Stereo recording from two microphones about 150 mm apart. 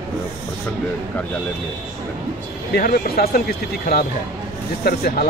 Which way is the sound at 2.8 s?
90° left.